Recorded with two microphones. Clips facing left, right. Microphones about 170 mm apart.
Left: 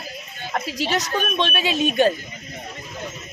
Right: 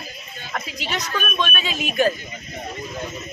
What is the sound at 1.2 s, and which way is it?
Speech, 30° left (ahead or behind).